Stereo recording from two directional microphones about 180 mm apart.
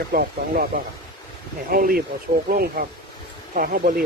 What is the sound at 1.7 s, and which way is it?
Speech, 55° right (ahead or behind).